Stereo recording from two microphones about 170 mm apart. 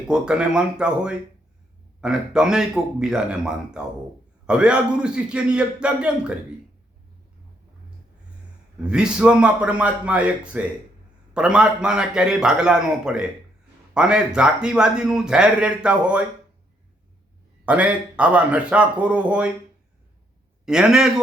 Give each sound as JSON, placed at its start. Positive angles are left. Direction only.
{"t": 0.1, "sound": "a man's voice", "side_deg": -5}
{"t": 8.8, "sound": "a man's voice", "side_deg": -5}
{"t": 17.7, "sound": "a man's voice", "side_deg": -5}
{"t": 20.7, "sound": "a man's voice", "side_deg": -5}